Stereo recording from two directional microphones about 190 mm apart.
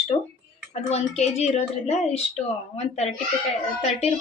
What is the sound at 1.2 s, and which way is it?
A woman's voice, 35° left (ahead or behind).